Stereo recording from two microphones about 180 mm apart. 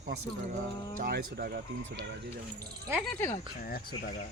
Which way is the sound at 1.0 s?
60° right (ahead or behind).